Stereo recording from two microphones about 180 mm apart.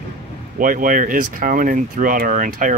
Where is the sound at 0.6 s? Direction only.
50° right (ahead or behind).